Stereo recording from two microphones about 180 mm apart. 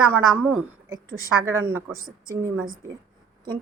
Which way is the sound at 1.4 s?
10° right (ahead or behind).